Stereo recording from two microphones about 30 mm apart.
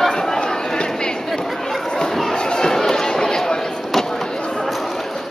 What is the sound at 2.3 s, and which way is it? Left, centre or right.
Chatter, left.